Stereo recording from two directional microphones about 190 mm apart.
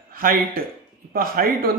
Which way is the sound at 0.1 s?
50° right (ahead or behind).